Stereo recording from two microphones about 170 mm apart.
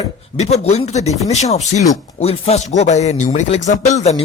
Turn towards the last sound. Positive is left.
turn(degrees=40)  # may be behind; listen again after turning